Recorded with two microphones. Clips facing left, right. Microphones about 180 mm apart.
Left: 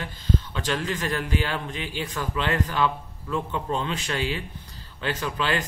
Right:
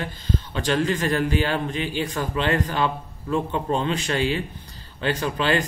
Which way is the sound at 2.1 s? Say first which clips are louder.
Right 1 dB; 45° right (ahead or behind).